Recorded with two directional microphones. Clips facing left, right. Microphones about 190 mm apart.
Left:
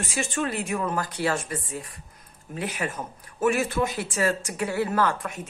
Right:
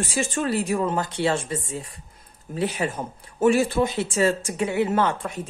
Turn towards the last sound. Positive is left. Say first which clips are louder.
# right 2 dB
turn(degrees=-30)  # may be behind; listen again after turning